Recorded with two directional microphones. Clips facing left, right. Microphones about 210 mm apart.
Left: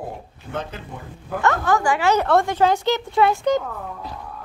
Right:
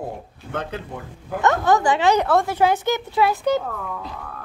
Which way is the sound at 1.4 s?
20° right (ahead or behind).